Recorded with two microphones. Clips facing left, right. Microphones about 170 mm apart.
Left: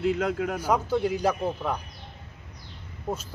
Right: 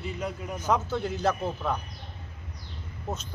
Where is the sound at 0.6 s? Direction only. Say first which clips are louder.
Even; 10° left (ahead or behind).